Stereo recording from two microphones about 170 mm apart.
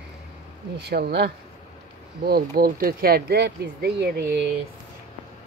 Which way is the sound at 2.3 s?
60° right (ahead or behind).